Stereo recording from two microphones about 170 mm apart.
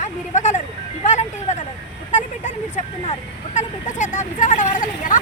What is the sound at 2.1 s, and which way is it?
Vehicle, 45° left (ahead or behind).